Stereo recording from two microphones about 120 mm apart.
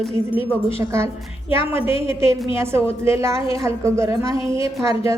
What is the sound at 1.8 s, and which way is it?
Speech, 50° left (ahead or behind).